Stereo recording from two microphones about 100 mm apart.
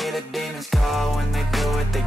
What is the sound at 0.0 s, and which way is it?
Music, centre (ahead or behind).